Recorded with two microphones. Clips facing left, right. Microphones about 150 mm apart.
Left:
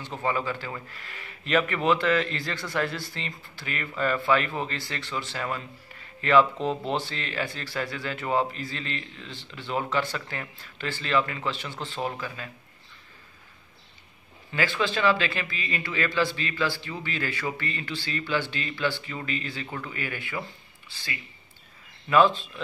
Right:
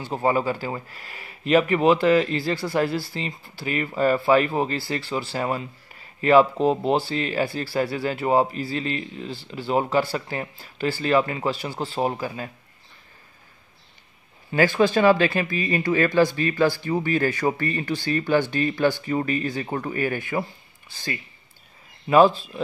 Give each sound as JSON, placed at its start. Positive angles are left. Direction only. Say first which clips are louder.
{"t": 0.0, "sound": "speech", "louder": "right 6 dB", "side_deg": -35}
{"t": 14.5, "sound": "speech", "louder": "right 8 dB", "side_deg": -45}